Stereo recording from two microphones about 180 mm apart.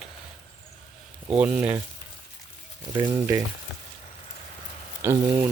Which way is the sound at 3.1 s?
15° right (ahead or behind).